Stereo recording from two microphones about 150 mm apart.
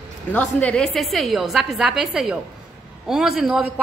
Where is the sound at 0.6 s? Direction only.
5° left (ahead or behind).